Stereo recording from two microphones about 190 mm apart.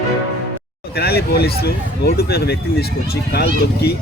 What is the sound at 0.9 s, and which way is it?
Speech, 55° left (ahead or behind).